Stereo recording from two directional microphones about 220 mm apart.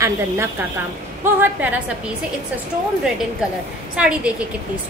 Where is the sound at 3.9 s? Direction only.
5° right (ahead or behind).